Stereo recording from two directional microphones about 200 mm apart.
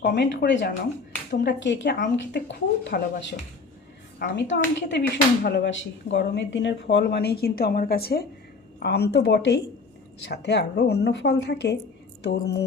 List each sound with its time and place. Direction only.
0.0 s speech: 55° left (ahead or behind)
4.4 s speech: 60° left (ahead or behind)